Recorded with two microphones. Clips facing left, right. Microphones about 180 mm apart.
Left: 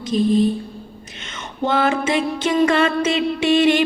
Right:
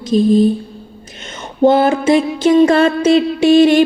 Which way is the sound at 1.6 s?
40° right (ahead or behind).